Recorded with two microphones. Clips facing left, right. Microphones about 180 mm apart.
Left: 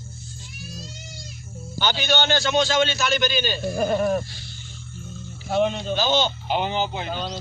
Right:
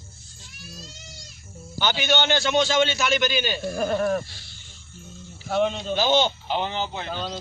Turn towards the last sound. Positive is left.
turn(degrees=10)  # may be behind; listen again after turning